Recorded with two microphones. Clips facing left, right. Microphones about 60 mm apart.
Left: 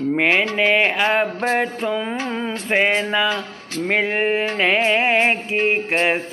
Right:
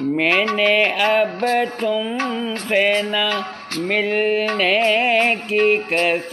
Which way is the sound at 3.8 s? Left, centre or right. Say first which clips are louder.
Right 1 dB; left.